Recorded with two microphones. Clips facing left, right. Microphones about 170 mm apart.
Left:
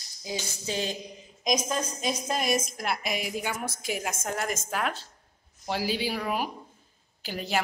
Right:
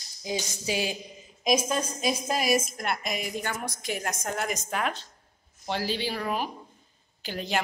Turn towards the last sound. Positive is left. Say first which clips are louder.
# even
turn(degrees=5)  # may be behind; listen again after turning